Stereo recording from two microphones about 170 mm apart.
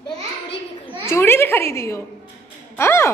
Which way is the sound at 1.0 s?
15° left (ahead or behind).